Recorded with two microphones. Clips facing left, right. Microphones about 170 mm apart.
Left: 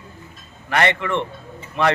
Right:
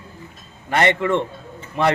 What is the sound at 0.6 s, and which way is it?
Speech, 20° right (ahead or behind).